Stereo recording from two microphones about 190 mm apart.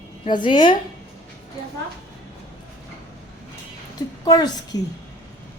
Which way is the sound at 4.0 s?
20° left (ahead or behind).